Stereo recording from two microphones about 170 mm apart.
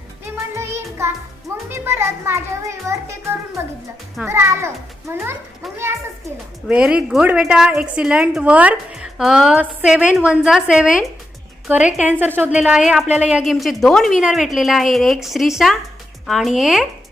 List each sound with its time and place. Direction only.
0.8 s music: 15° right (ahead or behind)
1.7 s a child's voice: 15° right (ahead or behind)
6.7 s a woman's voice: 5° right (ahead or behind)